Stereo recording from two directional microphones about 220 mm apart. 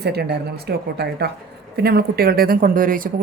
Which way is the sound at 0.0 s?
45° right (ahead or behind).